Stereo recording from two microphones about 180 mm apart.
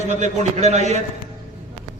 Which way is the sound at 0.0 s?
40° right (ahead or behind).